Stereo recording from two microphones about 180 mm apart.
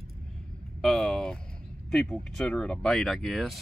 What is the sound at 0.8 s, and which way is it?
Speech, centre (ahead or behind).